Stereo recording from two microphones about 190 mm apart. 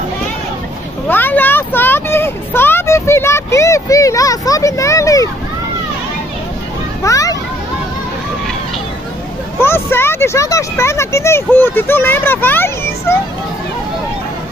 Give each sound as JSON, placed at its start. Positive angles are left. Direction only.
{"t": 1.0, "sound": "vehicle", "side_deg": 10}
{"t": 7.0, "sound": "children playing", "side_deg": 15}
{"t": 9.6, "sound": "speech", "side_deg": 10}